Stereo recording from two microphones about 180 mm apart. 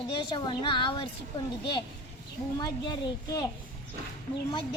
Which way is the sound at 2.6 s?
25° left (ahead or behind).